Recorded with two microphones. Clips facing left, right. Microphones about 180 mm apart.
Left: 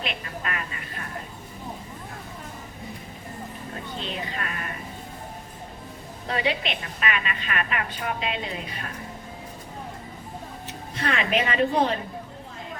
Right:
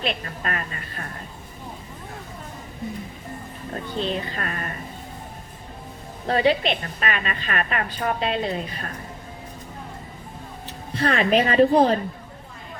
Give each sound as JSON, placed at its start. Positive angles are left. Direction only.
{"t": 0.0, "sound": "a woman's voice", "side_deg": -40}
{"t": 3.9, "sound": "a woman's voice", "side_deg": -35}
{"t": 6.2, "sound": "a woman's voice", "side_deg": -35}
{"t": 10.9, "sound": "a woman's voice", "side_deg": -35}